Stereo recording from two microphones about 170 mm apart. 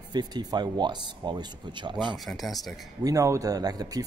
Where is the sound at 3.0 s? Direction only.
20° right (ahead or behind).